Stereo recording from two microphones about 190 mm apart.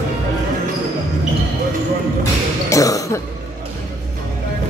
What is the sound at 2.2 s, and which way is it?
Basketball bounce, 15° left (ahead or behind).